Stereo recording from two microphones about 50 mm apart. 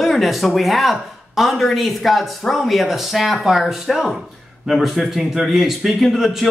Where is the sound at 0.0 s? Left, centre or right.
Centre.